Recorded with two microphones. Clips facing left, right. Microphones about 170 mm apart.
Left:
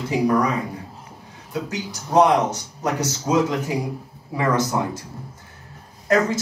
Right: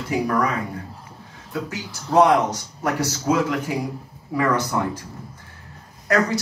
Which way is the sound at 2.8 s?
20° left (ahead or behind).